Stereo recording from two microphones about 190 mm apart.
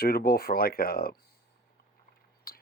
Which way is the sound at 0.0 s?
55° left (ahead or behind).